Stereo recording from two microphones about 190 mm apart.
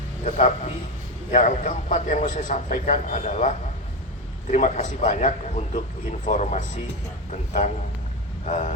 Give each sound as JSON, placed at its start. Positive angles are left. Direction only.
{"t": 0.3, "sound": "a man's voice", "side_deg": 40}
{"t": 8.4, "sound": "a man's voice", "side_deg": 40}